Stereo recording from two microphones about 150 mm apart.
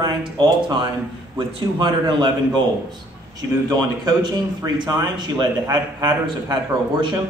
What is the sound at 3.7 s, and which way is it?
A man's voice, 25° right (ahead or behind).